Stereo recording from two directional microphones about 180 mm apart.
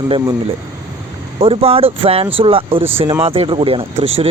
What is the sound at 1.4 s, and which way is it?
Speech, 30° right (ahead or behind).